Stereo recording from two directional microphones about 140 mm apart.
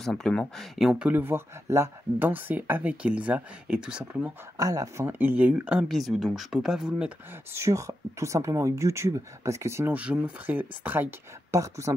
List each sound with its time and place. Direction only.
0.0 s speech: 5° left (ahead or behind)
4.6 s speech: 25° right (ahead or behind); by 7.1 s 5° right (ahead or behind)
7.5 s speech: 20° right (ahead or behind)